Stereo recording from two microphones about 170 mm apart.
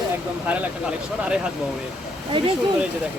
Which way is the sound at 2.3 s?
30° right (ahead or behind).